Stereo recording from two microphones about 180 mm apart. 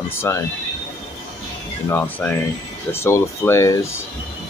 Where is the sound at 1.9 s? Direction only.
10° left (ahead or behind).